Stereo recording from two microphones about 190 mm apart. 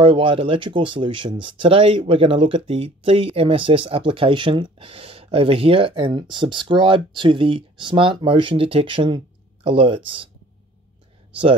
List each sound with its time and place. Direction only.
0.0 s speech: 30° right (ahead or behind)